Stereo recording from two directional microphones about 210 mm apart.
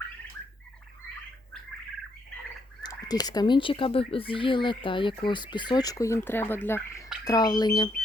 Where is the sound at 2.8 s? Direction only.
20° left (ahead or behind).